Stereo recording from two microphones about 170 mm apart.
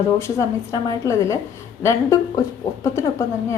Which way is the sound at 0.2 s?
15° left (ahead or behind).